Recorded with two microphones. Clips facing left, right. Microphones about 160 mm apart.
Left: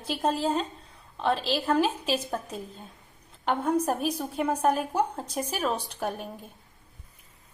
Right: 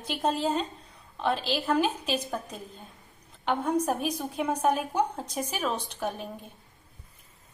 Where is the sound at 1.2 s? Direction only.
Centre (ahead or behind).